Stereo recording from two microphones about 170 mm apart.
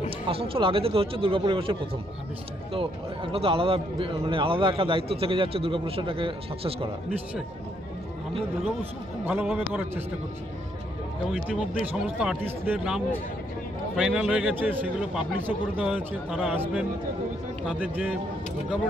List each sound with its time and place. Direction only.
0.3 s a man's voice: 35° right (ahead or behind)
9.2 s a man's voice: 10° right (ahead or behind)
11.3 s a man's voice: 5° right (ahead or behind)